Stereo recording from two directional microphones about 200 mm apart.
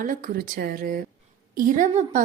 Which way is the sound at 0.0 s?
45° right (ahead or behind).